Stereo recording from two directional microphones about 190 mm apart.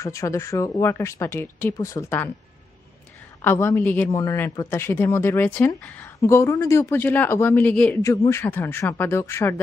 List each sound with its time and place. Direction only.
0.0 s a man's voice: 15° left (ahead or behind)
3.4 s a man's voice: 15° left (ahead or behind)